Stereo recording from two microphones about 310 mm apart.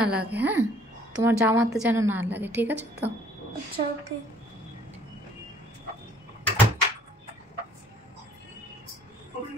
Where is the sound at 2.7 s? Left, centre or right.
Right.